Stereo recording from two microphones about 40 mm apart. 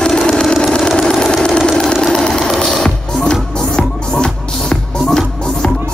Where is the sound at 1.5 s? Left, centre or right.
Centre.